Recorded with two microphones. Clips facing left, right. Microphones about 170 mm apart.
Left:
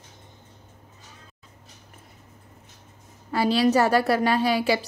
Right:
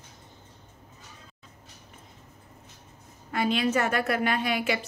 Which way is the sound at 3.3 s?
35° left (ahead or behind).